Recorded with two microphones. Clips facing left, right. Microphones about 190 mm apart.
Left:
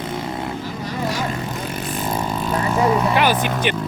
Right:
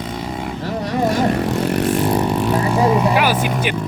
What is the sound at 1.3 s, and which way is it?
Vehicle, 75° right (ahead or behind).